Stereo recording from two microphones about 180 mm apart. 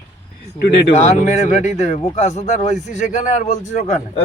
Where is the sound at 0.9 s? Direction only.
40° left (ahead or behind).